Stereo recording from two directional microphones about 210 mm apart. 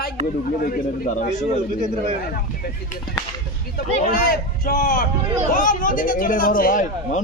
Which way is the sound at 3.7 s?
45° left (ahead or behind).